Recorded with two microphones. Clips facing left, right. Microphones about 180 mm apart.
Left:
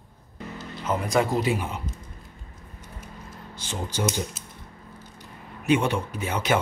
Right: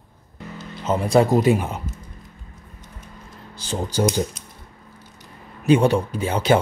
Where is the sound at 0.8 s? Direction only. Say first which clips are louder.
Right 6 dB; 25° right (ahead or behind).